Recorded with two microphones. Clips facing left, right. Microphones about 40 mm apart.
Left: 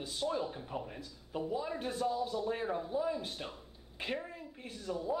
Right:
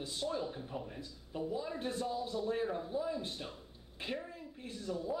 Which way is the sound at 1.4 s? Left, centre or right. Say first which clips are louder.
Left 2 dB; left.